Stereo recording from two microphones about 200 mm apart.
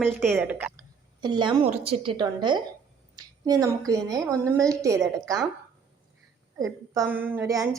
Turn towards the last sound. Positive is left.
turn(degrees=-15)  # may be behind; listen again after turning